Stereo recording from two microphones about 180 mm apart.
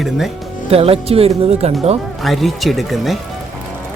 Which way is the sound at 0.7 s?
35° right (ahead or behind).